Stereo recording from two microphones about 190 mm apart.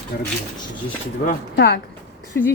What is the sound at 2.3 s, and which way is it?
Speech, 65° left (ahead or behind).